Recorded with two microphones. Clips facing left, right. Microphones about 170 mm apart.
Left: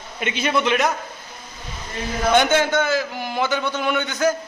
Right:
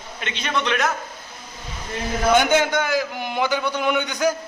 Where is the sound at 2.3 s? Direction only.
10° right (ahead or behind).